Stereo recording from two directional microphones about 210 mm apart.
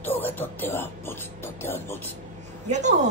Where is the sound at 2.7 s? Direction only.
35° right (ahead or behind).